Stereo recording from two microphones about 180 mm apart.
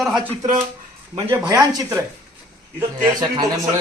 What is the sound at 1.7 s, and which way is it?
A man's voice, 15° right (ahead or behind).